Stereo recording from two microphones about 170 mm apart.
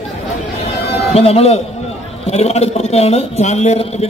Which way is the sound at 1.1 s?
35° left (ahead or behind).